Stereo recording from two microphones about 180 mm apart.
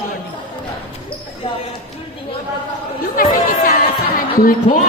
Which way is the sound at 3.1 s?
50° left (ahead or behind).